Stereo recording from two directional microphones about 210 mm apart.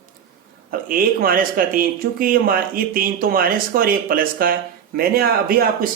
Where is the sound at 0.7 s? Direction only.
40° right (ahead or behind).